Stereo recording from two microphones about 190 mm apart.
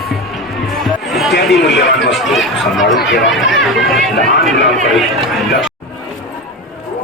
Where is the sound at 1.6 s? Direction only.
65° left (ahead or behind).